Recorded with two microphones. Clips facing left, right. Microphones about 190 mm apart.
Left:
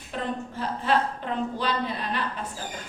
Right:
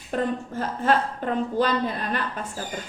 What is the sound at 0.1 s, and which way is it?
A woman's voice, 45° right (ahead or behind).